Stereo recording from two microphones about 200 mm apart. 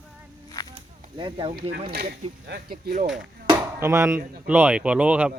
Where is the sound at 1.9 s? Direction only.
50° right (ahead or behind).